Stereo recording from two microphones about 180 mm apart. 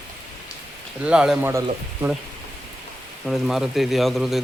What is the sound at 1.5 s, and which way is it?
Speech, 15° right (ahead or behind).